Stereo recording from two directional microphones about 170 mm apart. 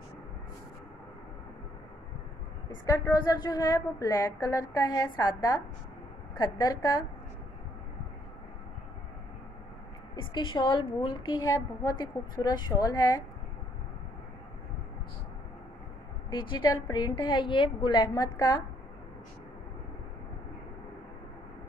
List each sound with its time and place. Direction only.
2.9 s a woman's voice: 20° left (ahead or behind)
10.1 s a woman's voice: 30° left (ahead or behind)
16.3 s a woman's voice: 25° left (ahead or behind)